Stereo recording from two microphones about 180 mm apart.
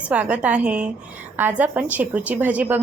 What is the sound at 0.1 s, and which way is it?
A woman's voice, 10° right (ahead or behind).